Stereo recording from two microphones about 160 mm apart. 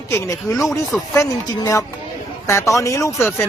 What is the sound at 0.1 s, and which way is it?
Speech, 15° left (ahead or behind).